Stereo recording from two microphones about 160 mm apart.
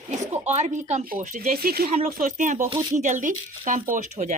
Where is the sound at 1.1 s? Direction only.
60° right (ahead or behind).